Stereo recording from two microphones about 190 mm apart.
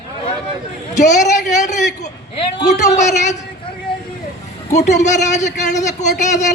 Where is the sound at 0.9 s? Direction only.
40° left (ahead or behind).